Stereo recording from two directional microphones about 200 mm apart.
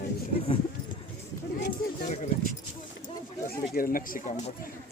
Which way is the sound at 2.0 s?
35° left (ahead or behind).